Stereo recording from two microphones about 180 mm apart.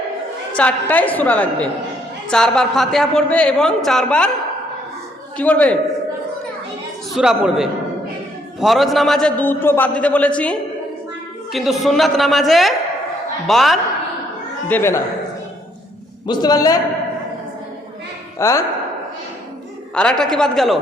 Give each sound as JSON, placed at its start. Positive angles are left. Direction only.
{"t": 0.5, "sound": "a man's voice", "side_deg": 10}
{"t": 5.4, "sound": "a man's voice", "side_deg": 5}
{"t": 7.1, "sound": "a man's voice", "side_deg": -5}
{"t": 14.7, "sound": "a man's voice", "side_deg": 15}
{"t": 16.2, "sound": "a man's voice", "side_deg": 25}
{"t": 18.3, "sound": "a man's voice", "side_deg": 15}
{"t": 19.9, "sound": "a man's voice", "side_deg": 5}